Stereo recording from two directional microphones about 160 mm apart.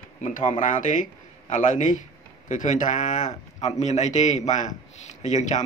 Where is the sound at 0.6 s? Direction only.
55° left (ahead or behind).